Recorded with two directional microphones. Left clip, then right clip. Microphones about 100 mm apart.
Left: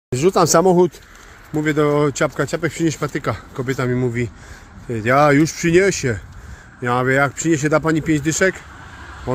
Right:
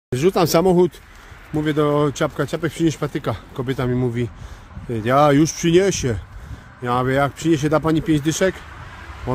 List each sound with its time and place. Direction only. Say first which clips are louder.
0.1 s speech: left 2 dB; 15° right (ahead or behind)
0.7 s speech: left 2 dB; 30° right (ahead or behind)
1.5 s speech: left 2 dB; 15° right (ahead or behind)
2.7 s speech: even; 25° right (ahead or behind)
6.8 s speech: left 2 dB; 15° right (ahead or behind)